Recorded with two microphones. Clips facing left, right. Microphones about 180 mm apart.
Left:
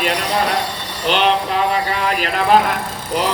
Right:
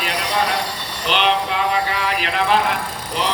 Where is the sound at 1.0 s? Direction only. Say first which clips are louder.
Left 3 dB; 40° left (ahead or behind).